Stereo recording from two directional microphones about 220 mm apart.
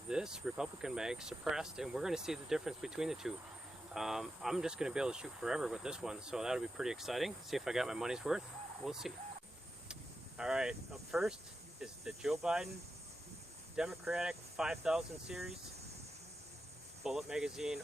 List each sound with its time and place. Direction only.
0.1 s speech: 5° right (ahead or behind)
13.7 s speech: centre (ahead or behind)
17.0 s speech: centre (ahead or behind)